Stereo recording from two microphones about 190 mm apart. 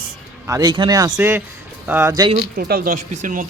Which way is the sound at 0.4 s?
15° right (ahead or behind).